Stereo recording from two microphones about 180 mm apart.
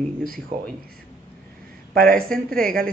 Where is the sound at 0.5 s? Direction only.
35° right (ahead or behind).